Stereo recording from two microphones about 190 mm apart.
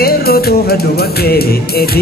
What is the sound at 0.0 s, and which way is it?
Music, 55° left (ahead or behind).